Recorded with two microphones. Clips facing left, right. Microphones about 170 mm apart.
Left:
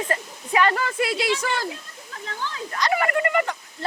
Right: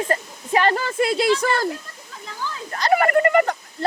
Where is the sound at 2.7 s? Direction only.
40° right (ahead or behind).